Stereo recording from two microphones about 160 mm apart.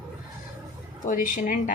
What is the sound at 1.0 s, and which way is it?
Speech, 55° left (ahead or behind).